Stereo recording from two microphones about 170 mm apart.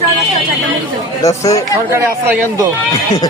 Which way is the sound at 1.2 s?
20° left (ahead or behind).